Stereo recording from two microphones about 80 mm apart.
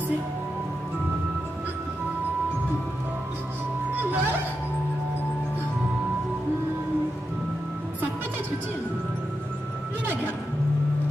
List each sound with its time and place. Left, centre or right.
3.9 s music: right